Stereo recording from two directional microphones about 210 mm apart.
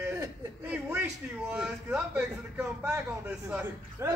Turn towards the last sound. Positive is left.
turn(degrees=-5)  # may be behind; listen again after turning